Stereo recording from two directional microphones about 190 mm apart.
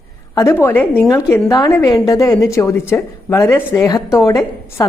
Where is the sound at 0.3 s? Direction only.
15° left (ahead or behind).